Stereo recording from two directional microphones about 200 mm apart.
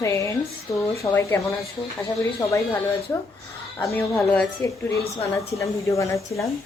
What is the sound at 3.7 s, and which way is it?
A woman's voice, 10° left (ahead or behind).